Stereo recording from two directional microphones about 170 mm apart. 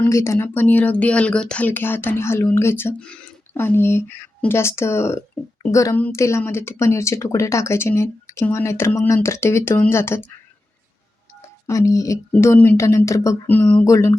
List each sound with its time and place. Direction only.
0.0 s speech: 15° left (ahead or behind)
11.6 s speech: 20° left (ahead or behind)